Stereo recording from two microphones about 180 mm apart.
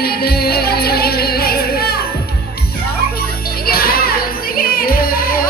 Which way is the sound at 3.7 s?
55° left (ahead or behind).